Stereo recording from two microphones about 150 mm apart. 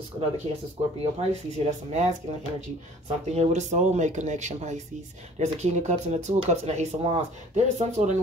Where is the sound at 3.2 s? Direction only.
45° right (ahead or behind).